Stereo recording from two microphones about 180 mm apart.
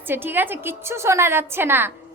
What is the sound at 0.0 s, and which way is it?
A woman's voice, 10° right (ahead or behind).